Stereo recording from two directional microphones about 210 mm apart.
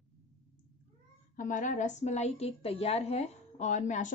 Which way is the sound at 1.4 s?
35° left (ahead or behind).